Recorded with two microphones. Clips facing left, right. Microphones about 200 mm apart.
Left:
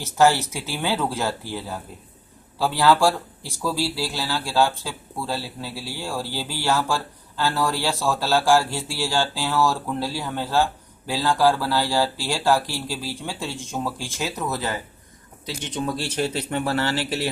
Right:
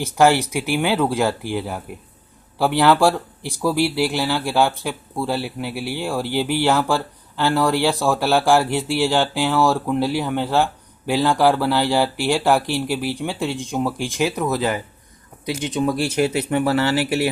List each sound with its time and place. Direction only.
0.0 s speech: 15° right (ahead or behind)